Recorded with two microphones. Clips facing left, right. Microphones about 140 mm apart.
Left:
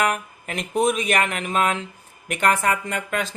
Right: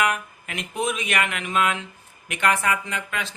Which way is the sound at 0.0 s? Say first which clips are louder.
Left 1 dB; 40° left (ahead or behind).